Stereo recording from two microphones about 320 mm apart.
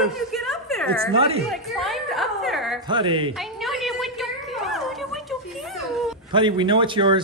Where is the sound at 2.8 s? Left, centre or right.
Centre.